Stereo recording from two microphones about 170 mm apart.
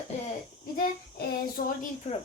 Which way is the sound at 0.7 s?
55° left (ahead or behind).